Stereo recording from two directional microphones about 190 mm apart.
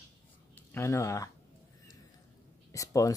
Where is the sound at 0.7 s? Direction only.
15° left (ahead or behind).